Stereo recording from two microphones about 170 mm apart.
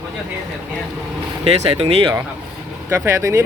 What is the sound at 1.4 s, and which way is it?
Speech, 35° right (ahead or behind).